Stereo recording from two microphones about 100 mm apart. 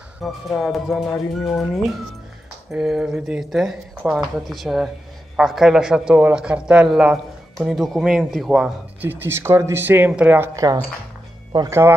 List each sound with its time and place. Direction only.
0.2 s speech: centre (ahead or behind)
9.0 s speech: 20° right (ahead or behind)
10.5 s speech: 35° right (ahead or behind)